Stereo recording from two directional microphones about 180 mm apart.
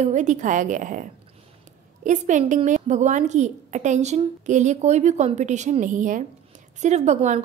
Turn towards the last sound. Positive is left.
turn(degrees=-40)  # may be behind; listen again after turning